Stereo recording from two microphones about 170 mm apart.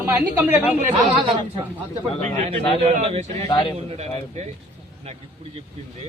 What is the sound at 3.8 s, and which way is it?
Speech, 35° right (ahead or behind).